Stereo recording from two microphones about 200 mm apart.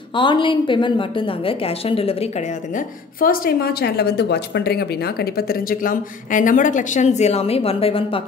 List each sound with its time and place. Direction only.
0.1 s a woman's voice: 25° left (ahead or behind)
3.2 s speech: 50° left (ahead or behind); by 8.2 s 30° left (ahead or behind)